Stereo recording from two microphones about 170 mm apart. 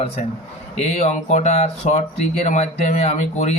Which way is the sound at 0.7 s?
40° left (ahead or behind).